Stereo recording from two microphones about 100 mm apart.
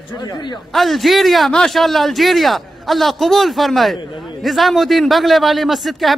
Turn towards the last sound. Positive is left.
turn(degrees=0)  # may be behind; listen again after turning